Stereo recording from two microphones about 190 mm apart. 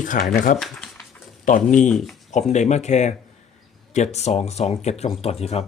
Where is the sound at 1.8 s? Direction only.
5° left (ahead or behind).